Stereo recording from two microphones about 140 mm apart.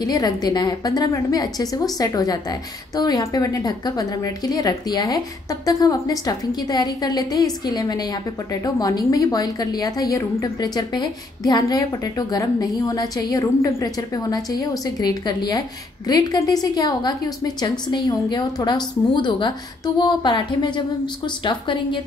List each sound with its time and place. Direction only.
0.0 s a woman's voice: 25° left (ahead or behind)